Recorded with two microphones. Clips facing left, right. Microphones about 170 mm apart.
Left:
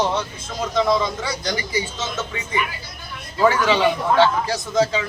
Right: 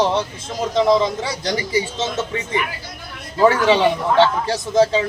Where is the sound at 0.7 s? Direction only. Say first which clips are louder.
Right 4 dB; 25° right (ahead or behind).